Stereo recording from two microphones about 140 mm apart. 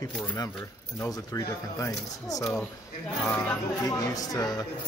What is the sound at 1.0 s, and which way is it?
Speech, 20° left (ahead or behind).